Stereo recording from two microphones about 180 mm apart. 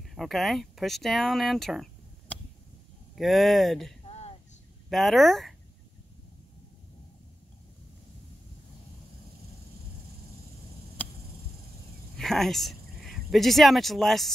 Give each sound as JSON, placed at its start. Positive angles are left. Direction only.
{"t": 0.0, "sound": "speech", "side_deg": 0}
{"t": 3.2, "sound": "speech", "side_deg": 0}
{"t": 4.0, "sound": "a sound", "side_deg": 35}
{"t": 4.8, "sound": "speech", "side_deg": 0}
{"t": 11.0, "sound": "a sound", "side_deg": 10}
{"t": 12.2, "sound": "speech", "side_deg": 0}